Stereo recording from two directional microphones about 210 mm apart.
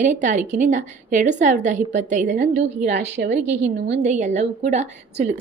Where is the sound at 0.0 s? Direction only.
35° right (ahead or behind).